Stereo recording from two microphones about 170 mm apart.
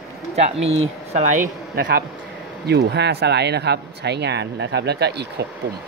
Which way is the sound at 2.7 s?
80° right.